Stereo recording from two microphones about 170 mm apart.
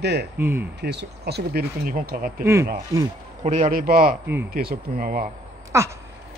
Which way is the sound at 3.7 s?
60° right (ahead or behind).